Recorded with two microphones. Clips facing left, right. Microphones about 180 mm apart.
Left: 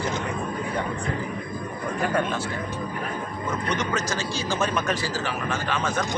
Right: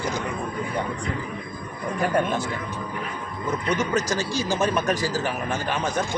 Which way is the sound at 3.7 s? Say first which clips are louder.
Right 4 dB; 10° right (ahead or behind).